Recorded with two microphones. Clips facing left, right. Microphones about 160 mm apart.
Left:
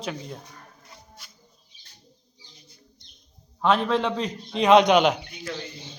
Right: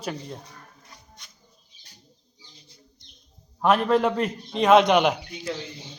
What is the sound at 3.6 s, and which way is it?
A man's voice, 10° right (ahead or behind).